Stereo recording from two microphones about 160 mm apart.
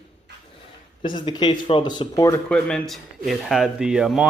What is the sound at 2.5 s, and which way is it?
Speech, 5° left (ahead or behind).